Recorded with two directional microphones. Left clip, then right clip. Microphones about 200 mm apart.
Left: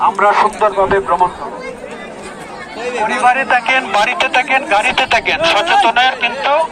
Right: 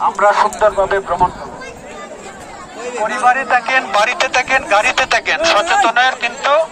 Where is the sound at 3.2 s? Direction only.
Centre (ahead or behind).